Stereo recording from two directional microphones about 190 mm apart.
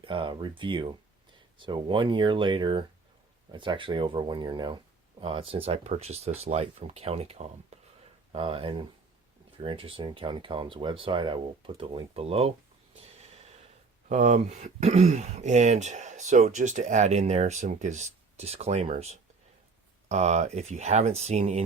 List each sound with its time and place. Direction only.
0.0 s speech: 25° right (ahead or behind)
7.7 s a sound: 35° right (ahead or behind)
8.3 s speech: 30° right (ahead or behind)
13.0 s snort: 35° right (ahead or behind)
14.1 s speech: 35° right (ahead or behind)